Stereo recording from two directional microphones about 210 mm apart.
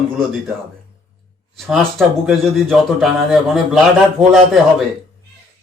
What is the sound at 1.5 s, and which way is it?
Speech, centre (ahead or behind).